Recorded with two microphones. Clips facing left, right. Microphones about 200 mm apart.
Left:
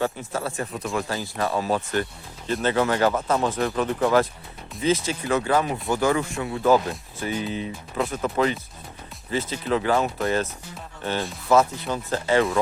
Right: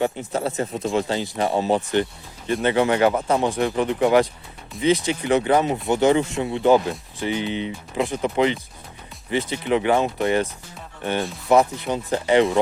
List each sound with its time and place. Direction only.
0.0 s speech: 20° right (ahead or behind)